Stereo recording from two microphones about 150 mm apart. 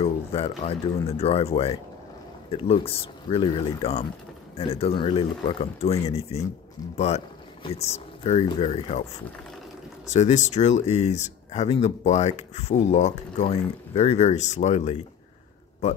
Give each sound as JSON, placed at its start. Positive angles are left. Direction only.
{"t": 0.0, "sound": "speech", "side_deg": 40}
{"t": 7.6, "sound": "speech", "side_deg": 45}
{"t": 10.0, "sound": "speech", "side_deg": 50}